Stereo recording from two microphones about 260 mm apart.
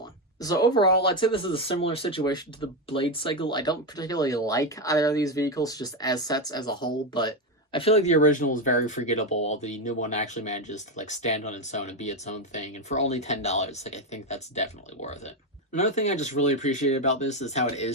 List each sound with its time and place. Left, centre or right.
0.4 s speech: centre